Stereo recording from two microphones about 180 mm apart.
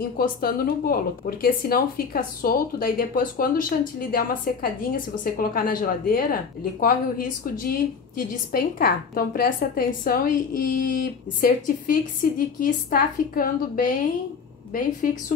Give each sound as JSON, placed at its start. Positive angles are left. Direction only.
{"t": 0.2, "sound": "speech", "side_deg": 55}